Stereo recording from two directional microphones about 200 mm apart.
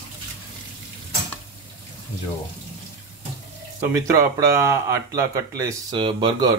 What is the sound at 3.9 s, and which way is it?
Speech, 15° right (ahead or behind).